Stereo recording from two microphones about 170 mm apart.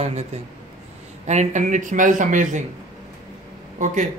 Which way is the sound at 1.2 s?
45° right (ahead or behind).